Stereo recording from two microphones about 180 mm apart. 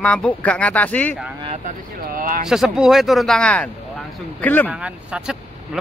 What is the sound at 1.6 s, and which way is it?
Speech, 50° right (ahead or behind).